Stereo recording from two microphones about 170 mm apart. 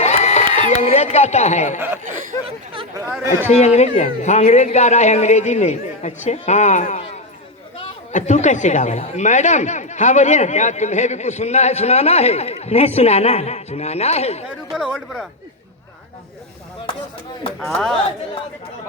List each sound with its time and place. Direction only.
0.0 s crowd: 40° left (ahead or behind)
0.7 s speech: 40° left (ahead or behind)
2.9 s speech: 15° right (ahead or behind)
3.5 s speech: 40° left (ahead or behind)
8.1 s speech: 45° left (ahead or behind)
14.7 s speech: centre (ahead or behind)
17.6 s speech: centre (ahead or behind)